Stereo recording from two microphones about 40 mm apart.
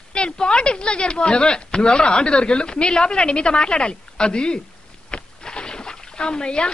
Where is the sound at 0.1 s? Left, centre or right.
Left.